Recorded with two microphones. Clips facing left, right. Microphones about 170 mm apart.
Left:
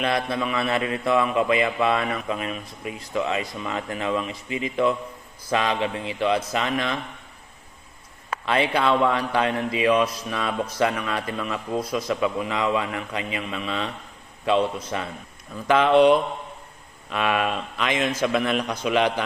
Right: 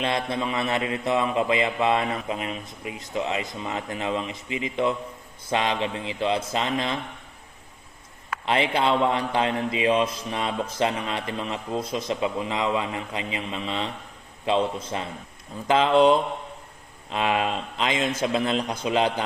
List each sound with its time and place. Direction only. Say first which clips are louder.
0.0 s a man's voice: left 2 dB; 25° right (ahead or behind)
8.4 s a man's voice: left 1 dB; 25° right (ahead or behind)